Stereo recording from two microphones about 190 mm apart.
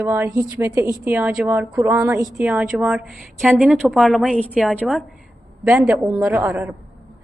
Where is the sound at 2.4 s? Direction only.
5° right (ahead or behind).